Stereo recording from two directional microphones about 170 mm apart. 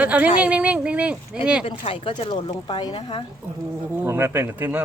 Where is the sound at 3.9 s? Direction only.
15° right (ahead or behind).